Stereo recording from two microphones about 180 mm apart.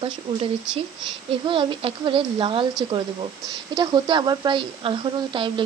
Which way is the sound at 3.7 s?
25° right (ahead or behind).